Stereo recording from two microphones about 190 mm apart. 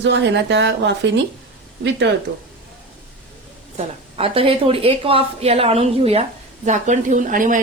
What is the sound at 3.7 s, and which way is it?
A woman's voice, 30° right (ahead or behind).